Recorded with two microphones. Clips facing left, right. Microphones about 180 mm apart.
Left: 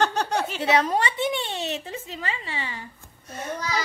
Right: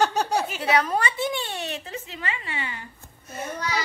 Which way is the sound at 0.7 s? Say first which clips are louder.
Left 1 dB; 25° left (ahead or behind).